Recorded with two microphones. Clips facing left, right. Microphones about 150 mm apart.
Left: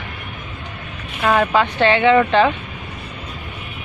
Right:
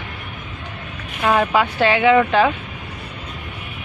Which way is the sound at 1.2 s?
10° right (ahead or behind).